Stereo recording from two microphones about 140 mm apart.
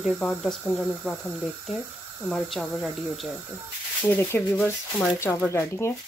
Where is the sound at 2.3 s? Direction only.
Centre (ahead or behind).